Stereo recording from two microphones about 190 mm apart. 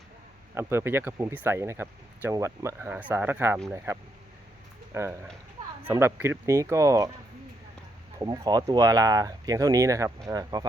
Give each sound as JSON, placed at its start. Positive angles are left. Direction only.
{"t": 0.5, "sound": "speech", "side_deg": -10}
{"t": 8.2, "sound": "speech", "side_deg": -20}